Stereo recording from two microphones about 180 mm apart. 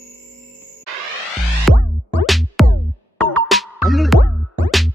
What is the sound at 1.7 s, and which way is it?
Music, centre (ahead or behind).